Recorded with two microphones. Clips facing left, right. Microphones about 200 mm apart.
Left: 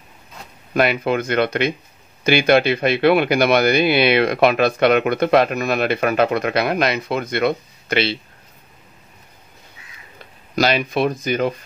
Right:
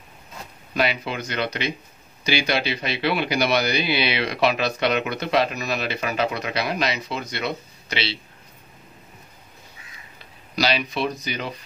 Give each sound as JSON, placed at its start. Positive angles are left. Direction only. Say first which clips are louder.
{"t": 0.7, "sound": "speech", "louder": "left 7 dB", "side_deg": 55}
{"t": 10.5, "sound": "speech", "louder": "left 5 dB", "side_deg": 50}